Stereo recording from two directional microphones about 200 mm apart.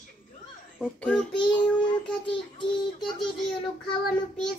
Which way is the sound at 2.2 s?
25° left (ahead or behind).